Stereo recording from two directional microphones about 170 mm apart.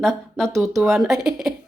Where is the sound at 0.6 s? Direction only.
Centre (ahead or behind).